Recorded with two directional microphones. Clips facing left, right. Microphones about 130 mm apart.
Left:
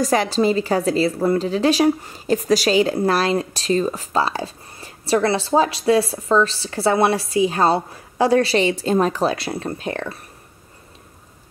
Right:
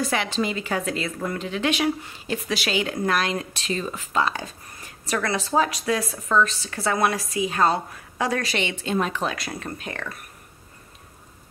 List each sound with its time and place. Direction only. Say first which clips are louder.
0.0 s a woman's voice: left 7 dB; 40° left (ahead or behind)